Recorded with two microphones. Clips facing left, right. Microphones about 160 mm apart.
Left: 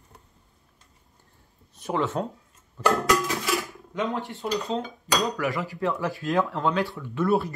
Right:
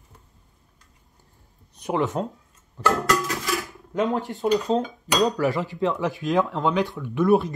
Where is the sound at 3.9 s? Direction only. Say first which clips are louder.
Right 5 dB; 40° right (ahead or behind).